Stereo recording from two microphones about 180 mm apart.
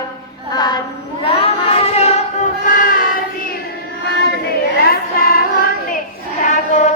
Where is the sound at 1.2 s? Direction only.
30° left (ahead or behind); by 3.2 s 50° left (ahead or behind).